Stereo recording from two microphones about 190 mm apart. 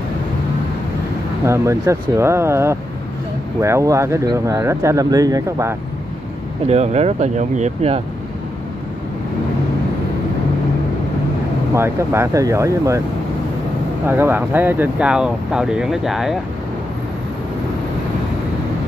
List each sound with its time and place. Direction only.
1.4 s speech: 15° right (ahead or behind)
6.7 s speech: 35° right (ahead or behind)
11.7 s speech: 15° right (ahead or behind)
14.0 s speech: 10° right (ahead or behind)